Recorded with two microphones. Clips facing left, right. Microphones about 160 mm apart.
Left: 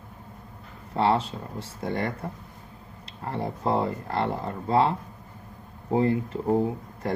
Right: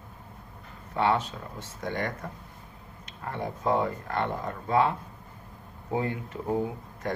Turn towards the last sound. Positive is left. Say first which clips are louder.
# left 4 dB
turn(degrees=30)  # may be behind; listen again after turning